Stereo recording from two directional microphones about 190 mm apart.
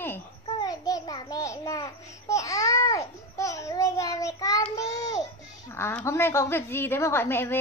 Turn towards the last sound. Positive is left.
turn(degrees=10)  # may be behind; listen again after turning